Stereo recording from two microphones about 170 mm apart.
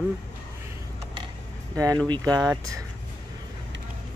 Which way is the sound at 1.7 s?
20° right (ahead or behind).